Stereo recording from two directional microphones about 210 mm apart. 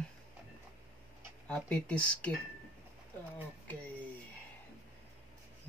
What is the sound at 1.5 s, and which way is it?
Speech, 5° left (ahead or behind).